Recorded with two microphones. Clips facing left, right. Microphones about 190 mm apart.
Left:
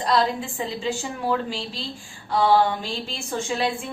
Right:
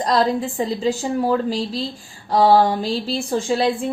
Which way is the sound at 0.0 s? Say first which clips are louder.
Right 4 dB; 40° right (ahead or behind).